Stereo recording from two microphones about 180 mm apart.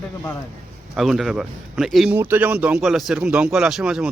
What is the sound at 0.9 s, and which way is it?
Speech, centre (ahead or behind).